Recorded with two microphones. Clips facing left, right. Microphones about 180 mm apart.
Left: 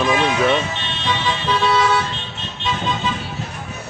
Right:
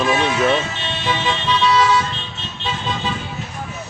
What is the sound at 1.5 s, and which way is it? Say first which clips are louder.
Vehicle: right 1 dB; 50° left (ahead or behind).